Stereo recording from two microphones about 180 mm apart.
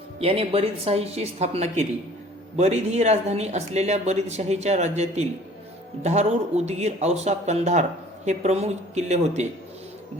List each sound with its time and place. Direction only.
0.2 s speech: 35° right (ahead or behind)